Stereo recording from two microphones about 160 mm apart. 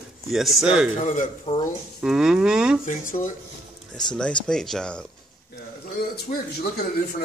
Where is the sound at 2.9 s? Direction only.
55° left (ahead or behind).